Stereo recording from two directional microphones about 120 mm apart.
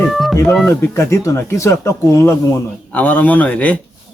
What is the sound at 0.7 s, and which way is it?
Speech, 25° left (ahead or behind).